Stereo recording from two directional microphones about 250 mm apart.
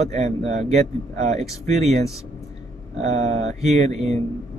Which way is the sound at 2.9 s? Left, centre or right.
Right.